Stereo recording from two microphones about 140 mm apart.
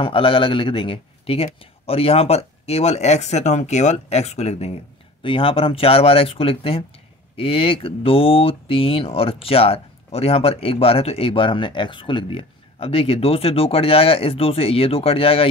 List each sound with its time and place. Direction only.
0.0 s speech: 40° left (ahead or behind)
5.2 s speech: 40° left (ahead or behind)